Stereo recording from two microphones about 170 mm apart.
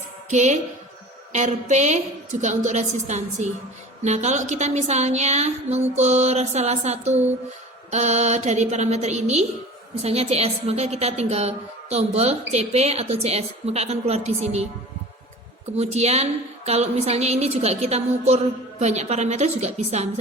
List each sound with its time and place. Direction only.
0.3 s a woman's voice: 45° right (ahead or behind)
15.7 s a woman's voice: 40° right (ahead or behind)